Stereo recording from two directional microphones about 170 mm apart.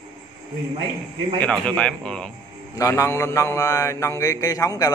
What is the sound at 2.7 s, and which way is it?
A man's voice, 20° left (ahead or behind).